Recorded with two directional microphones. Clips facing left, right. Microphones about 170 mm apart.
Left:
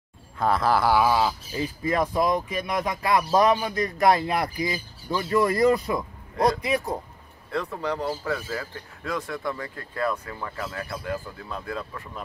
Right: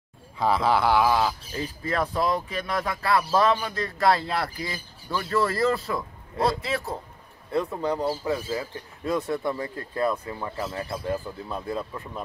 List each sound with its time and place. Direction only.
0.4 s speech: centre (ahead or behind); by 7.0 s 15° left (ahead or behind)
7.5 s speech: 20° right (ahead or behind)